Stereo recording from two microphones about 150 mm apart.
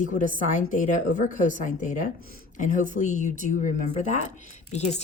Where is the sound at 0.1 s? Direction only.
60° left (ahead or behind).